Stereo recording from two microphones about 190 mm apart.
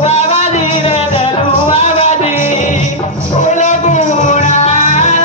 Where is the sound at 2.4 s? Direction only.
40° left (ahead or behind).